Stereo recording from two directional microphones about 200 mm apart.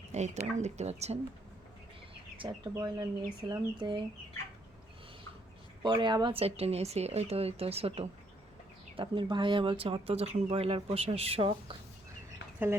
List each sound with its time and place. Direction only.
0.1 s speech: 35° right (ahead or behind)
2.7 s speech: 20° right (ahead or behind)
5.8 s speech: 20° right (ahead or behind)